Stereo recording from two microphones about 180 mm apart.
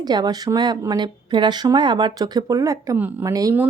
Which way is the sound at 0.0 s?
25° right (ahead or behind).